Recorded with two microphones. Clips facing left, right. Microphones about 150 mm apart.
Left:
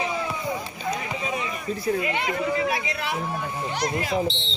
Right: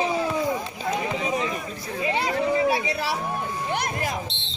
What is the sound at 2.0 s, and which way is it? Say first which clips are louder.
Chatter: right 2 dB; 30° right (ahead or behind).